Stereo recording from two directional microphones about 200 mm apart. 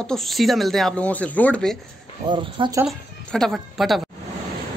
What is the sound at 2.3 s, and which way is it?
Speech, 25° right (ahead or behind).